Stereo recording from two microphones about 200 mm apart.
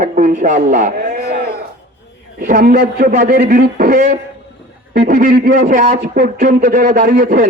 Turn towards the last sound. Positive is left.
turn(degrees=-40)  # may be behind; listen again after turning